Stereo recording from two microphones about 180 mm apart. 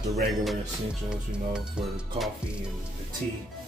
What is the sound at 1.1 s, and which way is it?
Speech, 5° right (ahead or behind).